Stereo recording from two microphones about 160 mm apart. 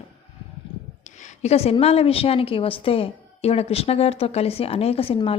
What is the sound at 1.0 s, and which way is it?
A woman's voice, 50° left (ahead or behind).